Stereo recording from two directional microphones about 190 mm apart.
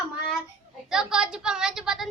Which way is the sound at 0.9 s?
5° right (ahead or behind).